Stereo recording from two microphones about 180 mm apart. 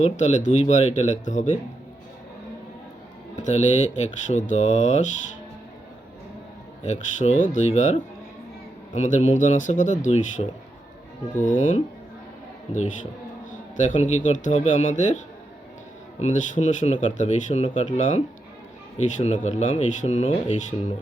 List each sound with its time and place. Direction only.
0.0 s speech: 40° left (ahead or behind)
3.4 s speech: 40° left (ahead or behind)
6.8 s speech: 40° left (ahead or behind)
13.5 s speech: 45° left (ahead or behind)
16.2 s speech: 45° left (ahead or behind)